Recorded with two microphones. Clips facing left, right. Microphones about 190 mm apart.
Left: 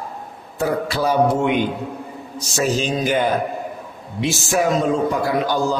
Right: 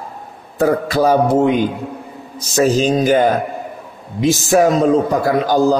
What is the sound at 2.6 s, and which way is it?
A man's voice, 40° right (ahead or behind).